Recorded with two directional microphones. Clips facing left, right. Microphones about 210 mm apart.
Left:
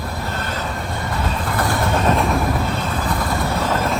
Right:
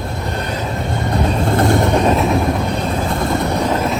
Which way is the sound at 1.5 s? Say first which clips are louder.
Right 6 dB; 25° right (ahead or behind).